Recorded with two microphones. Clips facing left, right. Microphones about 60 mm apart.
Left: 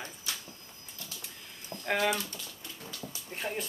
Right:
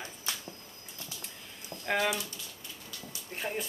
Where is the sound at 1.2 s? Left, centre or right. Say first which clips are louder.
Right 1 dB; centre.